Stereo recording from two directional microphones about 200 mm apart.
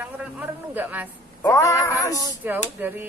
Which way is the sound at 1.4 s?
15° left (ahead or behind).